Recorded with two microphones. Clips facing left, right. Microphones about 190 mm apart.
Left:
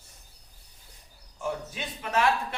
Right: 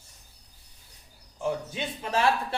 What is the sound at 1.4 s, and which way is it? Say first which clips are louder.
A man's voice: right 3 dB; 25° right (ahead or behind).